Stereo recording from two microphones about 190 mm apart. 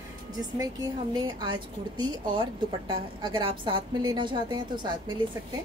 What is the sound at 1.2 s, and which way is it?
A woman's voice, 20° right (ahead or behind).